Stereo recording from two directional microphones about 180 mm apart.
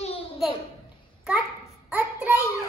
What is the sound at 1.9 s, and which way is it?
Child singing, 10° right (ahead or behind).